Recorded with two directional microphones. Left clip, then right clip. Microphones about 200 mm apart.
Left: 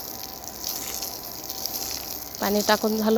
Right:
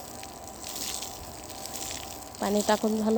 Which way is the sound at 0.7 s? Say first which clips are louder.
Left 2 dB; 45° right (ahead or behind).